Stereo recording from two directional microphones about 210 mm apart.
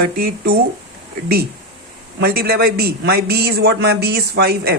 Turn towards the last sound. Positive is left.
turn(degrees=-50)  # may be behind; listen again after turning